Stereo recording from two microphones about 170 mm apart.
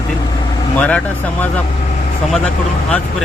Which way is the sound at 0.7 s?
10° left (ahead or behind).